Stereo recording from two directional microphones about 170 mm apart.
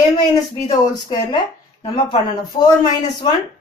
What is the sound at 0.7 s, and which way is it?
Speech, 20° left (ahead or behind).